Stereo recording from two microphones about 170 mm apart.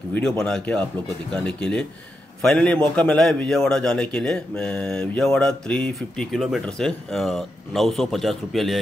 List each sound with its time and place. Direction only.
0.1 s speech: 5° left (ahead or behind)